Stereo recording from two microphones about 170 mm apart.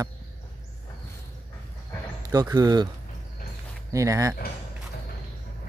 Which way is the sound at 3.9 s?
20° right (ahead or behind).